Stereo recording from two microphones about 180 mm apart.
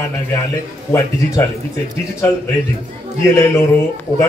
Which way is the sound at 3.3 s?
15° left (ahead or behind).